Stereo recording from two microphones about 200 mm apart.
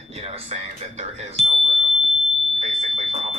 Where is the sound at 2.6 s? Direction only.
30° right (ahead or behind).